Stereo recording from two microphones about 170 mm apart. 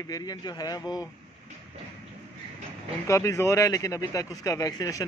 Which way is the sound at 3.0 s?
20° left (ahead or behind).